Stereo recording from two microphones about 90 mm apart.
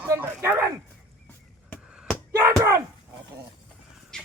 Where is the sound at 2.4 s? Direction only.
35° right (ahead or behind).